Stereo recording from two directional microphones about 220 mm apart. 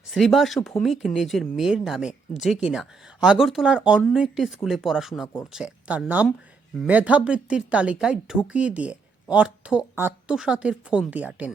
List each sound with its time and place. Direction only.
0.1 s speech: centre (ahead or behind)